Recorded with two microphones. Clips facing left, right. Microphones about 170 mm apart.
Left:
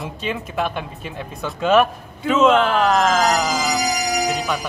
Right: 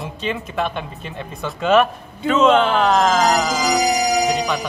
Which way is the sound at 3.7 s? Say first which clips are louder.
Right 4 dB; 25° right (ahead or behind).